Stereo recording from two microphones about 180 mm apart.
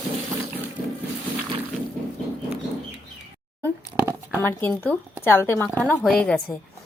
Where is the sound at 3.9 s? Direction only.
10° right (ahead or behind).